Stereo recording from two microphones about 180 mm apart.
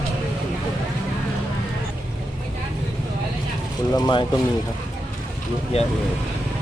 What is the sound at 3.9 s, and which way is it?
Speech, 25° left (ahead or behind).